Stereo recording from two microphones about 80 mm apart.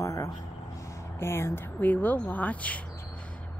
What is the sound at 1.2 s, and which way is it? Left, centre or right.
Speech, left.